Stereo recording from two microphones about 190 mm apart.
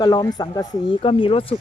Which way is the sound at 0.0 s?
20° left (ahead or behind).